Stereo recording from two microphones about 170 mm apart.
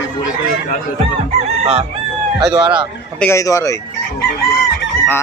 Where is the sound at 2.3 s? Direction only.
25° right (ahead or behind).